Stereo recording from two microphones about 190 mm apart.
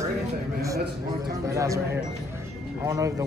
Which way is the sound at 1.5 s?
15° right (ahead or behind).